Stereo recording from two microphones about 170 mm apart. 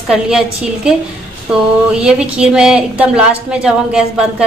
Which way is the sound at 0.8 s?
5° right (ahead or behind).